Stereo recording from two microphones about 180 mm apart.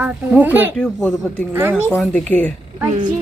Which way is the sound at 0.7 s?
5° left (ahead or behind).